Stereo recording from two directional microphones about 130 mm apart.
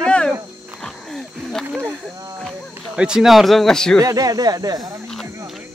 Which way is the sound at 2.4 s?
Centre (ahead or behind).